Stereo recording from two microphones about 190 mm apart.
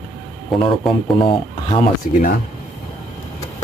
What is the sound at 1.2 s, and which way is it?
Speech, 25° left (ahead or behind).